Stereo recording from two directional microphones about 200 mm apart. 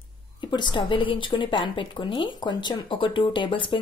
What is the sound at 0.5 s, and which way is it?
A woman's voice, 25° left (ahead or behind).